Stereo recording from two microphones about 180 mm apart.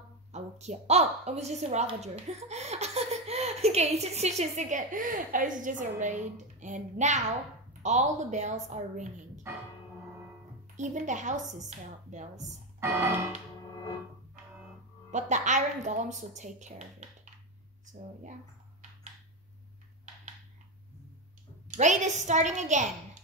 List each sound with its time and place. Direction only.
0.3 s a woman's voice: 40° right (ahead or behind)
9.5 s music: 15° right (ahead or behind)
10.8 s a woman's voice: 40° right (ahead or behind)
12.8 s music: 15° right (ahead or behind)
15.0 s a woman's voice: 40° right (ahead or behind)
21.6 s a woman's voice: 40° right (ahead or behind)